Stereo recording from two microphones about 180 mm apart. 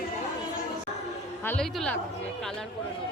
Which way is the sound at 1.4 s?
5° left (ahead or behind).